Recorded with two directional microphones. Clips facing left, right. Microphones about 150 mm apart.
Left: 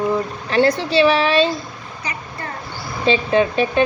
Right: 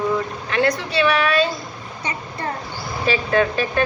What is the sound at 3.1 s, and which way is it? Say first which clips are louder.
Speech: left 3 dB; 20° left (ahead or behind).